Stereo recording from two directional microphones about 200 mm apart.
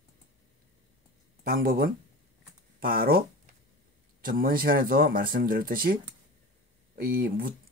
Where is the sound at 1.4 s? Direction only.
50° right (ahead or behind).